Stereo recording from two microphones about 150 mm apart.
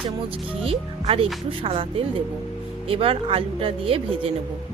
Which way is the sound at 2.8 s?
35° right (ahead or behind).